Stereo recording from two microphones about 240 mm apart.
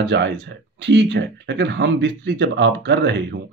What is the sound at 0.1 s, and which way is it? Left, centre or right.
Speech, right.